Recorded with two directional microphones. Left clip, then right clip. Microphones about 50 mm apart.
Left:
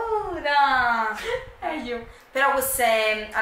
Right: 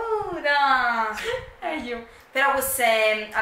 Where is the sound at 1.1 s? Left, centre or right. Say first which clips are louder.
Even; right.